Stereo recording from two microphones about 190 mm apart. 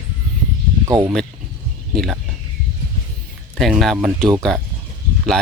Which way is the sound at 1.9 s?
Centre (ahead or behind).